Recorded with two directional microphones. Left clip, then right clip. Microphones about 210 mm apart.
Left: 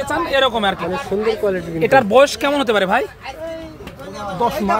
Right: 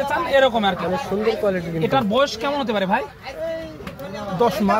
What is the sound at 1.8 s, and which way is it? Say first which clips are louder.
Speech: left 8 dB; 55° left (ahead or behind).